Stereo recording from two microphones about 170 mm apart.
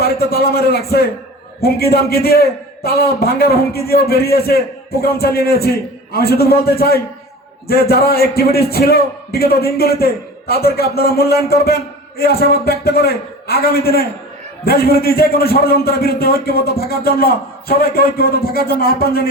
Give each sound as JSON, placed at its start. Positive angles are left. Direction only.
{"t": 0.0, "sound": "a man's voice", "side_deg": 65}